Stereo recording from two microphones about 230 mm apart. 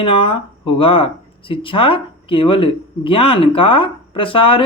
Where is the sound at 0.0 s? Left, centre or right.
Left.